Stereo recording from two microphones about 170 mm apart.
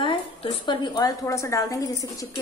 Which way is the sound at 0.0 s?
30° left (ahead or behind).